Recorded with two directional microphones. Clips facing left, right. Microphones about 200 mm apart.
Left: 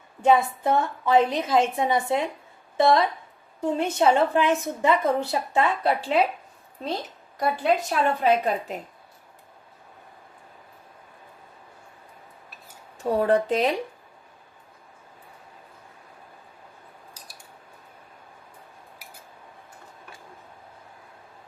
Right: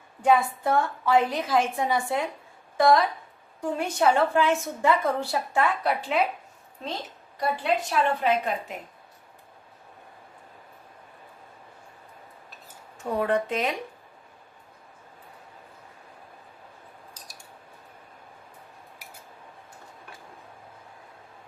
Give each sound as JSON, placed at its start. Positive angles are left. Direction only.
{"t": 0.2, "sound": "a woman's voice", "side_deg": 25}
{"t": 7.3, "sound": "a woman's voice", "side_deg": 40}
{"t": 13.1, "sound": "a woman's voice", "side_deg": 35}